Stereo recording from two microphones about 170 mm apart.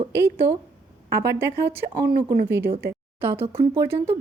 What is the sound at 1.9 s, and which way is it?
Speech, 65° right (ahead or behind).